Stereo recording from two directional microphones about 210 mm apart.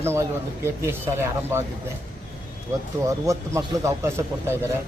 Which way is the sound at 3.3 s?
15° right (ahead or behind).